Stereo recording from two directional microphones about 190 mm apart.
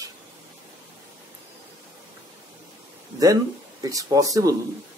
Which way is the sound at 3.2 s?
20° right (ahead or behind).